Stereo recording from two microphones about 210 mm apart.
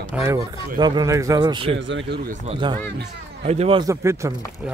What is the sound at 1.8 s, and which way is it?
Speech, 60° right (ahead or behind).